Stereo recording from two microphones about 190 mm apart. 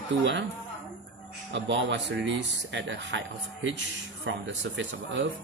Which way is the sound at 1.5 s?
70° right (ahead or behind).